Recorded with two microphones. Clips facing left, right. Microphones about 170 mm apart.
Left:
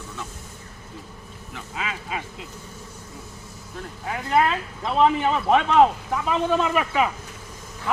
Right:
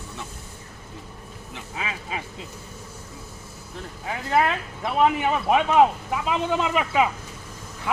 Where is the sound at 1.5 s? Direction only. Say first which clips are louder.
Left 1 dB; 20° right (ahead or behind).